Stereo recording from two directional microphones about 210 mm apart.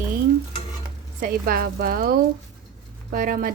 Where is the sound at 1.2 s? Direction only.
45° right (ahead or behind).